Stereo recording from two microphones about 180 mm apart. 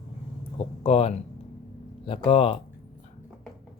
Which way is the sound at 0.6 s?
35° left (ahead or behind).